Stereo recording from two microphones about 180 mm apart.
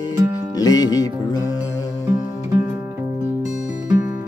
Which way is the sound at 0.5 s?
20° left (ahead or behind).